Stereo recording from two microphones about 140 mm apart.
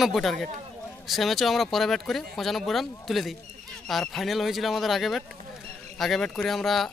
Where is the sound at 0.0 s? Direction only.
Centre (ahead or behind).